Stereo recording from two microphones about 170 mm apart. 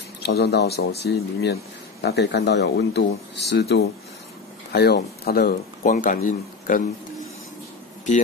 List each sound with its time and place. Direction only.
0.2 s speech: 70° left (ahead or behind); by 6.8 s 50° left (ahead or behind)